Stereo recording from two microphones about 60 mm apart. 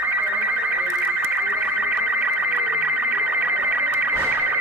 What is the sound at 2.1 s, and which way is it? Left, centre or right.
Music, right.